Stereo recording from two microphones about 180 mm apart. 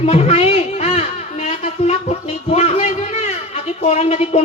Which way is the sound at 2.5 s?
35° left (ahead or behind).